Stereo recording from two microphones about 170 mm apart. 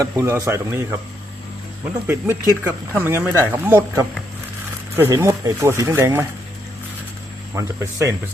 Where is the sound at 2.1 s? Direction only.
10° right (ahead or behind).